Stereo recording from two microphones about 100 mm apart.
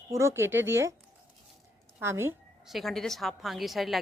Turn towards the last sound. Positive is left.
turn(degrees=0)  # may be behind; listen again after turning